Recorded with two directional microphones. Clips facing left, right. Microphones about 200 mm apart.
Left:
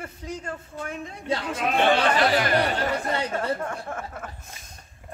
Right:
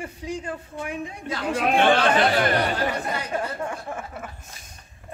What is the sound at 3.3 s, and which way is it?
Speech, 5° right (ahead or behind).